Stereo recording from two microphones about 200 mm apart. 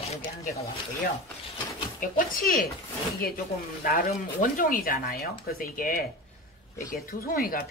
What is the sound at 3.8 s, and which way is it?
Speech, 45° left (ahead or behind).